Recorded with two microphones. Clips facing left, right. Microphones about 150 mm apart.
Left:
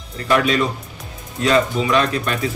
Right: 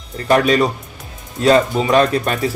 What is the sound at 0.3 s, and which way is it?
A man's voice, 40° right (ahead or behind).